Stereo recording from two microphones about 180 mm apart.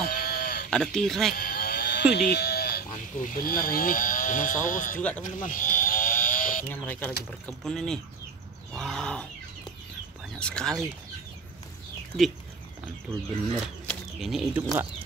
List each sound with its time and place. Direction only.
0.0 s chicken: 50° left (ahead or behind)
0.7 s speech: 5° left (ahead or behind)
1.3 s a sound: 55° left (ahead or behind)
2.1 s speech: 65° left (ahead or behind); by 5.0 s 45° left (ahead or behind)
5.2 s sheep: 45° left (ahead or behind)
6.7 s speech: 10° left (ahead or behind)
8.7 s wild animals: 5° left (ahead or behind)
10.4 s speech: 5° left (ahead or behind)
13.8 s speech: centre (ahead or behind)